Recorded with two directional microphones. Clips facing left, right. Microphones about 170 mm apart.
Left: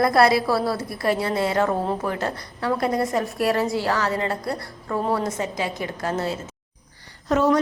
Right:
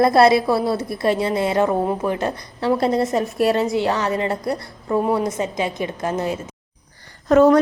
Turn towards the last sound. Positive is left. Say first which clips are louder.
# right 7 dB
turn(degrees=-55)  # may be behind; listen again after turning